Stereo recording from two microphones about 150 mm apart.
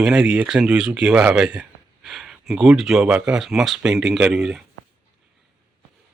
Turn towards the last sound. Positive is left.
turn(degrees=-5)  # may be behind; listen again after turning